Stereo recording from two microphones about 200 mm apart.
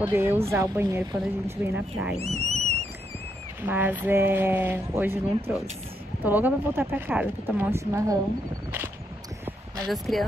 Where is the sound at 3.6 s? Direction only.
10° right (ahead or behind).